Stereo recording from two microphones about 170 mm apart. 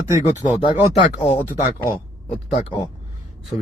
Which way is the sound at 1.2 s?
40° left (ahead or behind).